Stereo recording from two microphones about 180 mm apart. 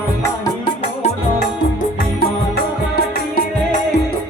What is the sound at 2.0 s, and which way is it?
Music, 55° left (ahead or behind).